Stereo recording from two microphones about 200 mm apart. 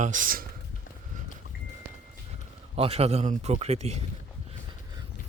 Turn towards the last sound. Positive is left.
turn(degrees=-35)  # may be behind; listen again after turning